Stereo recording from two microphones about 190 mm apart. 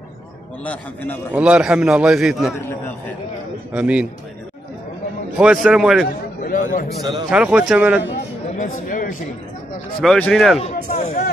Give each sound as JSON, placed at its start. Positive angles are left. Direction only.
{"t": 1.3, "sound": "a man's voice", "side_deg": -5}
{"t": 2.5, "sound": "a man's voice", "side_deg": 10}
{"t": 3.7, "sound": "a man's voice", "side_deg": -5}
{"t": 5.4, "sound": "a man's voice", "side_deg": -5}
{"t": 6.4, "sound": "a man's voice", "side_deg": 50}
{"t": 7.0, "sound": "a man's voice", "side_deg": -20}
{"t": 7.2, "sound": "a man's voice", "side_deg": -5}
{"t": 8.5, "sound": "speech", "side_deg": 45}
{"t": 10.0, "sound": "a man's voice", "side_deg": 5}
{"t": 10.9, "sound": "speech", "side_deg": 35}